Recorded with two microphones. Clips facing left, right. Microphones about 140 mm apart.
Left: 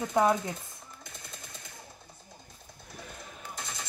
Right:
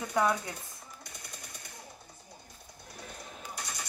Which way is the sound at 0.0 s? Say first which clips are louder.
Left 3 dB; 25° left (ahead or behind).